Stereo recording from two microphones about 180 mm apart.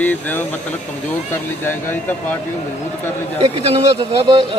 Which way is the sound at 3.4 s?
30° right (ahead or behind).